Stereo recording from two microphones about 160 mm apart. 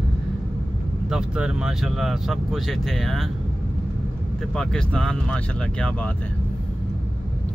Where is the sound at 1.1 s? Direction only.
5° right (ahead or behind).